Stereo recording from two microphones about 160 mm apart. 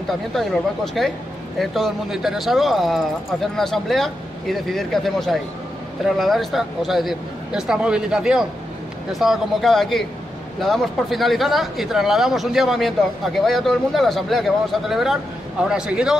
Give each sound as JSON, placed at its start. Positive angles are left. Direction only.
{"t": 0.3, "sound": "speech", "side_deg": 0}